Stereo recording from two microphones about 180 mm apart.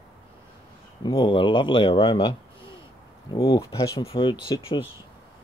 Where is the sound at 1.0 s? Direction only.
30° left (ahead or behind).